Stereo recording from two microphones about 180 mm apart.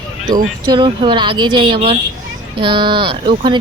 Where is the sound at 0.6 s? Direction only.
25° right (ahead or behind).